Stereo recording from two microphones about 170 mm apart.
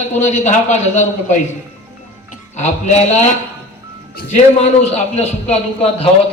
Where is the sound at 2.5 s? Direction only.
40° left (ahead or behind).